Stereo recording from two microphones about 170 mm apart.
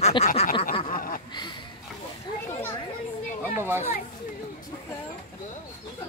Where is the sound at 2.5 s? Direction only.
15° left (ahead or behind).